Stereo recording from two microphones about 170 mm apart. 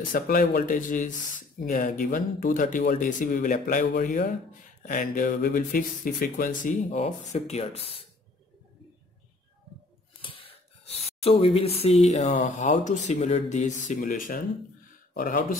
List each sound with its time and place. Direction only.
0.1 s speech: 60° left (ahead or behind); by 8.1 s 35° left (ahead or behind)
10.2 s a sound: 30° left (ahead or behind)
11.1 s speech: 35° left (ahead or behind); by 15.4 s 55° left (ahead or behind)